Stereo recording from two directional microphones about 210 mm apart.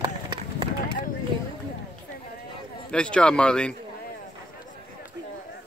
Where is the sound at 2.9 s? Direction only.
5° left (ahead or behind).